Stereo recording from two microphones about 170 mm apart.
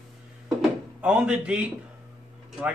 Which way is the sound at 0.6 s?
5° right (ahead or behind).